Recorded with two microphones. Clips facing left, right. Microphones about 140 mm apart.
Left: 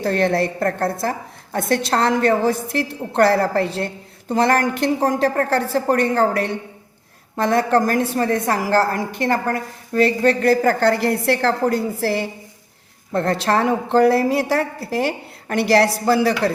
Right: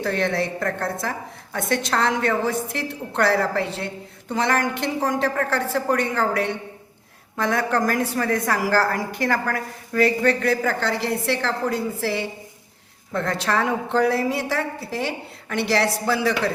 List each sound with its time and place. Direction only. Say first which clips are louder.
0.0 s a woman's voice: left 5 dB; 35° left (ahead or behind)